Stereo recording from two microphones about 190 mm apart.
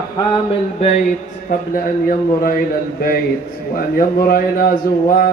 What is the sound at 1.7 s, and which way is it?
Speech, 50° left (ahead or behind).